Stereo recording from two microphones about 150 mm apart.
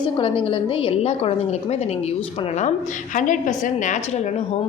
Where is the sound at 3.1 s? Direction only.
60° left (ahead or behind).